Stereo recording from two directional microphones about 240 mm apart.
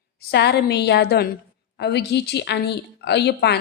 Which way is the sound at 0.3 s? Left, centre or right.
Left.